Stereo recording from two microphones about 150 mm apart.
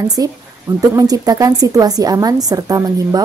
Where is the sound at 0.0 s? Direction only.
25° right (ahead or behind).